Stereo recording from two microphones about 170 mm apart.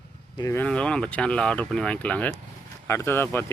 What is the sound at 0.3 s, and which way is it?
Speech, 20° left (ahead or behind).